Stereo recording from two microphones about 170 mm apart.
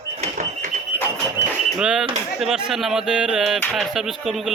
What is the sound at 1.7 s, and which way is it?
Speech, 5° right (ahead or behind).